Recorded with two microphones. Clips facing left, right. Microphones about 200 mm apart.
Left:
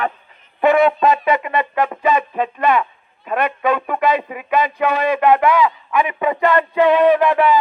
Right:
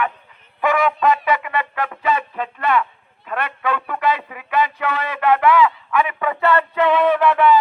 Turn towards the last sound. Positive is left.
turn(degrees=15)  # may be behind; listen again after turning